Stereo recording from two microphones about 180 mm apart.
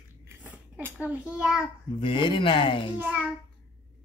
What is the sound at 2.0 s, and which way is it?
Speech, 25° left (ahead or behind).